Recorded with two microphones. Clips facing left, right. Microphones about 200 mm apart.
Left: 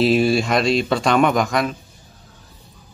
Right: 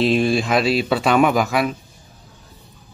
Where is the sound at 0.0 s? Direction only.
Centre (ahead or behind).